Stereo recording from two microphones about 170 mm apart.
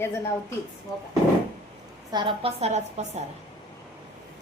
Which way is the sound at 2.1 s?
30° right (ahead or behind).